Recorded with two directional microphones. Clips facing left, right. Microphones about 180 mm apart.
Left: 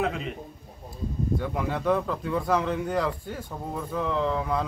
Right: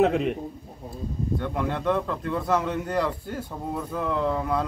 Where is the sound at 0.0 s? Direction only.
55° right (ahead or behind).